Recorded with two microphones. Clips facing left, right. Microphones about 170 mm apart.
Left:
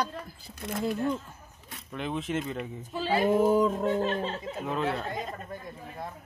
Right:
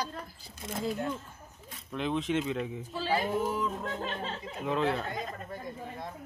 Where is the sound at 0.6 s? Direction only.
65° left (ahead or behind).